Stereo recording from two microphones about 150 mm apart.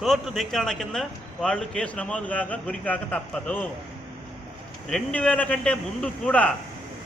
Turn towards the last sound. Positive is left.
turn(degrees=10)  # may be behind; listen again after turning